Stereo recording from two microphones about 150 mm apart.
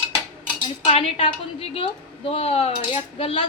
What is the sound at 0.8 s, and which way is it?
A woman's voice, 40° left (ahead or behind).